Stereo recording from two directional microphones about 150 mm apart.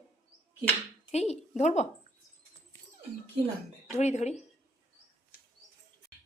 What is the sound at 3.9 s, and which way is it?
Speech, 50° left (ahead or behind).